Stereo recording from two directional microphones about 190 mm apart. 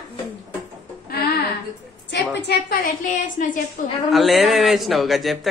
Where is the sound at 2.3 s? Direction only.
60° left (ahead or behind); by 3.9 s 45° left (ahead or behind).